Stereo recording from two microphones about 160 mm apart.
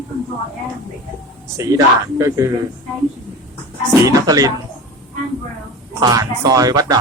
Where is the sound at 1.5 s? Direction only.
20° right (ahead or behind).